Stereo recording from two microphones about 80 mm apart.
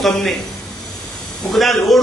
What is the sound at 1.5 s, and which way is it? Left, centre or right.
Speech, centre.